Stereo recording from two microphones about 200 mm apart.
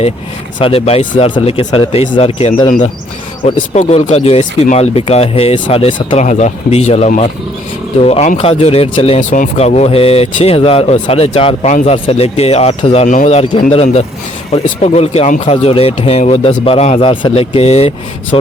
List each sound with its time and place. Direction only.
0.6 s speech: 30° left (ahead or behind)